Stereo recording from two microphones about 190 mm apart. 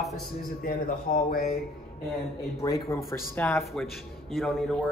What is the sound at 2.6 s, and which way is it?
Speech, 20° left (ahead or behind).